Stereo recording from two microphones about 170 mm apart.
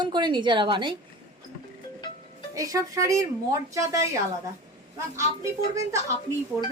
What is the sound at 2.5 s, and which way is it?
A woman's voice, 20° right (ahead or behind).